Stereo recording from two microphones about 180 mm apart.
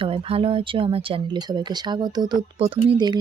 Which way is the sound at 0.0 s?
30° right (ahead or behind).